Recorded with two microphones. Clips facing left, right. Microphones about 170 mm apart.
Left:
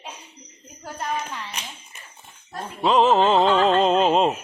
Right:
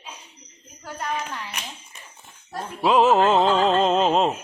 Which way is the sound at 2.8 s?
5° right (ahead or behind).